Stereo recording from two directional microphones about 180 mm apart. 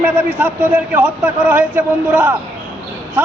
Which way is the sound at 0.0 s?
10° right (ahead or behind).